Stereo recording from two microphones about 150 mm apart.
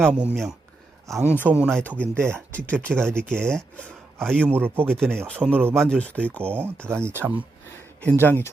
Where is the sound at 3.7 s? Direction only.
5° left (ahead or behind).